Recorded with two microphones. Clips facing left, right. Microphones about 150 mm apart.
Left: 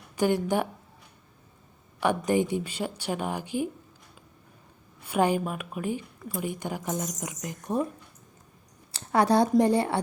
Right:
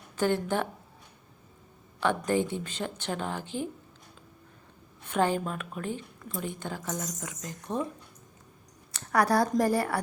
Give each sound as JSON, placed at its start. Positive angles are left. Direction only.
{"t": 0.2, "sound": "a woman's voice", "side_deg": 15}
{"t": 2.0, "sound": "a woman's voice", "side_deg": 15}
{"t": 5.0, "sound": "a woman's voice", "side_deg": 10}
{"t": 8.9, "sound": "a sound", "side_deg": 25}
{"t": 9.6, "sound": "speech", "side_deg": 25}